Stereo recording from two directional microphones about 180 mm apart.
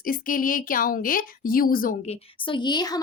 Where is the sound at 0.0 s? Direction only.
50° left (ahead or behind).